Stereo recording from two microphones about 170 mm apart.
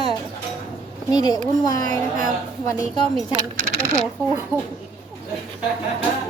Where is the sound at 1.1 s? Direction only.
20° left (ahead or behind).